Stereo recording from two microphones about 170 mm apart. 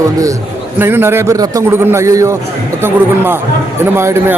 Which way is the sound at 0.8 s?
15° right (ahead or behind).